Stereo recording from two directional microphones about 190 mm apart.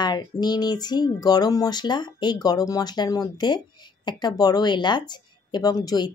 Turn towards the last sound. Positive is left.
turn(degrees=20)  # may be behind; listen again after turning